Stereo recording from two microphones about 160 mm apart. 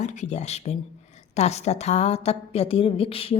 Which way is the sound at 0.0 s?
50° left (ahead or behind).